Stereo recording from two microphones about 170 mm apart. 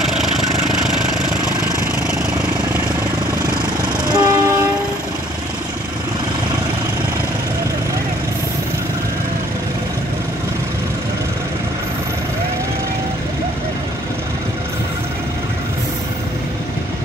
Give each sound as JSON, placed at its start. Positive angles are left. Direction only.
{"t": 4.1, "sound": "train", "side_deg": -25}